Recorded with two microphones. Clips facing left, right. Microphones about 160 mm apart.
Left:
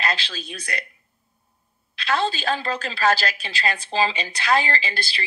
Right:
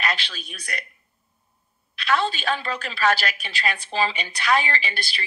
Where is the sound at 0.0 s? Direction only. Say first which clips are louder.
Left 1 dB; 35° left (ahead or behind).